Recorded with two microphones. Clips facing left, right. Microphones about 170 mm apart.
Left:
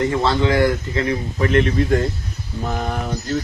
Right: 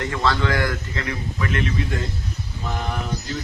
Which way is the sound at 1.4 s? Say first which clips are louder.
Left 8 dB; 35° left (ahead or behind).